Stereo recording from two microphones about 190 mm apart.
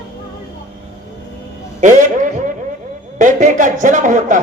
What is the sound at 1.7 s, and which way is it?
A man's voice, 40° right (ahead or behind).